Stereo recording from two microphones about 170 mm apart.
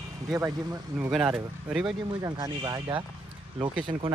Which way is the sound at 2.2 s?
20° right (ahead or behind).